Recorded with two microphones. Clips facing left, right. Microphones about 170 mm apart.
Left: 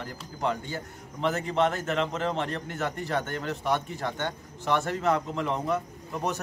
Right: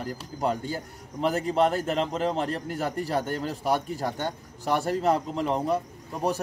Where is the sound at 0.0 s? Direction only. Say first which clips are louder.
Right 2 dB; 35° right (ahead or behind).